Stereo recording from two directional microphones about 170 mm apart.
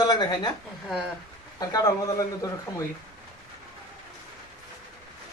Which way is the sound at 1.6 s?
20° left (ahead or behind).